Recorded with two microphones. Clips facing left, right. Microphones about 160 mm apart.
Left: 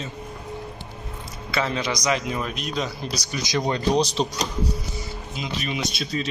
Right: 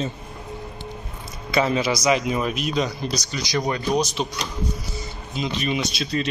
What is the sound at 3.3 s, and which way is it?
Speech, 20° left (ahead or behind).